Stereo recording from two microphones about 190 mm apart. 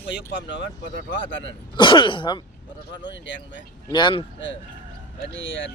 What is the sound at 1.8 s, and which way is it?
Speech, 25° left (ahead or behind).